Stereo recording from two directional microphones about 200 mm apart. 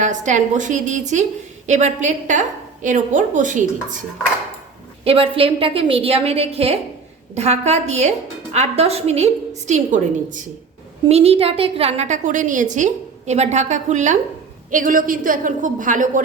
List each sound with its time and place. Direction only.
0.0 s a woman's voice: 40° right (ahead or behind)
5.0 s a woman's voice: 30° right (ahead or behind)